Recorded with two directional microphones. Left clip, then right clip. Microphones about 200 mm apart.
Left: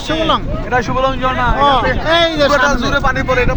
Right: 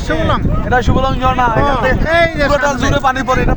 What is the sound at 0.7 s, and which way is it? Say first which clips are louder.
Speech: even; 45° right (ahead or behind).